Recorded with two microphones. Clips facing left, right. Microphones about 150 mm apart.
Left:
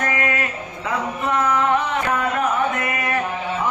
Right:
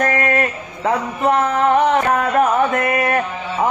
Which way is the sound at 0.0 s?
45° right (ahead or behind).